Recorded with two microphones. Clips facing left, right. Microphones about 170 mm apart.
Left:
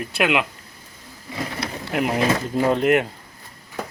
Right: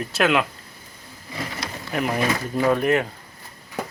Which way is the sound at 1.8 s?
20° left (ahead or behind).